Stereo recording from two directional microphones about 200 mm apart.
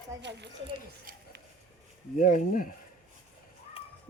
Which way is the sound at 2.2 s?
40° left (ahead or behind).